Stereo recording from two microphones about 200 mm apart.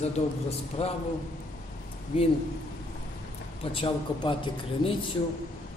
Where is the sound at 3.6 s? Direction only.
25° left (ahead or behind).